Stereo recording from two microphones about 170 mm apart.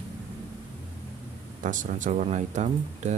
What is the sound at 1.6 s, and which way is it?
Speech, 50° right (ahead or behind).